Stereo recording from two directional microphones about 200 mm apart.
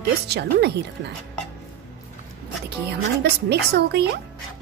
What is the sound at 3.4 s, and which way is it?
Speech, 55° right (ahead or behind).